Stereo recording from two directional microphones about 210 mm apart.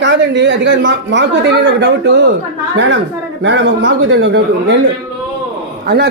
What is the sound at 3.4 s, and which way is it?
Speech, 60° right (ahead or behind).